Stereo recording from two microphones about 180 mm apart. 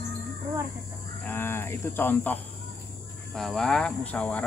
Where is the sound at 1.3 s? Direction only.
15° left (ahead or behind).